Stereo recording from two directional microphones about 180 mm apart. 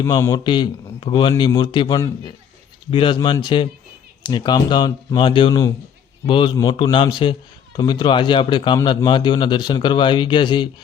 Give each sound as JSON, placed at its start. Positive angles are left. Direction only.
{"t": 0.0, "sound": "a man's voice", "side_deg": 20}